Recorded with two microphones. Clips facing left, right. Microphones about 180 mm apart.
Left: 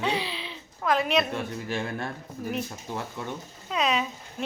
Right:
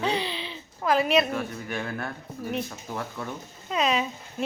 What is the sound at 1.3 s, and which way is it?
Speech, 25° left (ahead or behind).